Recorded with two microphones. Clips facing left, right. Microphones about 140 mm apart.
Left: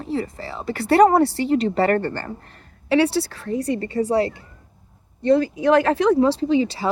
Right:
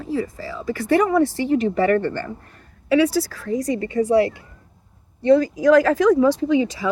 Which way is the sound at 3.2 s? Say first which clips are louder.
Right 1 dB; 65° left (ahead or behind).